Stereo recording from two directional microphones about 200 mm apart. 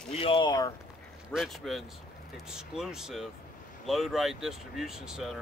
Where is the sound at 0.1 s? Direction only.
25° left (ahead or behind).